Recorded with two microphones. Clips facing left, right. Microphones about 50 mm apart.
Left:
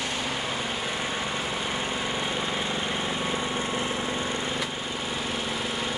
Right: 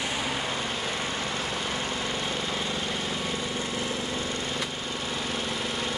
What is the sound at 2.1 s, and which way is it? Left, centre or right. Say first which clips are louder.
Vehicle: left 2 dB; centre.